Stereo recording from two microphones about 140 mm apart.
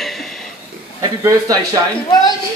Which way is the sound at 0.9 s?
25° right (ahead or behind).